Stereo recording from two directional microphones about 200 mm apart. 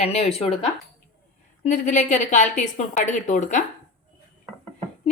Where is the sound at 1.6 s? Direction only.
40° left (ahead or behind).